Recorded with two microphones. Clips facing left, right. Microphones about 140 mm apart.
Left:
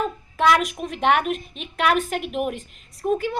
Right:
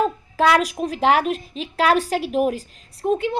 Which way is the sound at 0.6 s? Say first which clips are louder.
Right 4 dB; 35° right (ahead or behind).